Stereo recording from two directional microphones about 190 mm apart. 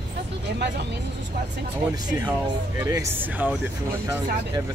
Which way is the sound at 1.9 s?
20° right (ahead or behind).